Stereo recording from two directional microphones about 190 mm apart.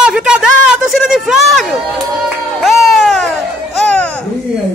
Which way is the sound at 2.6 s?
Centre (ahead or behind).